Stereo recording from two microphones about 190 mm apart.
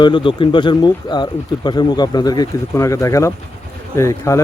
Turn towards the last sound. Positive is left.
turn(degrees=15)  # may be behind; listen again after turning